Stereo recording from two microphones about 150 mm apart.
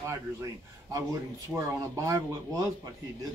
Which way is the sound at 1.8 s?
20° right (ahead or behind).